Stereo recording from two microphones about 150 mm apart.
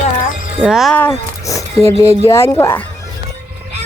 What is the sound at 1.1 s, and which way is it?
Speech, 20° left (ahead or behind).